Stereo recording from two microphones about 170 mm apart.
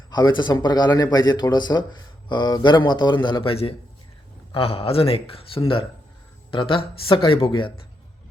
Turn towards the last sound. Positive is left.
turn(degrees=30)  # may be behind; listen again after turning